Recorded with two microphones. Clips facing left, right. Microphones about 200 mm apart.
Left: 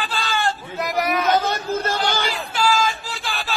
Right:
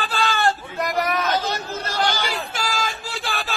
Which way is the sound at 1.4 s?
55° left (ahead or behind).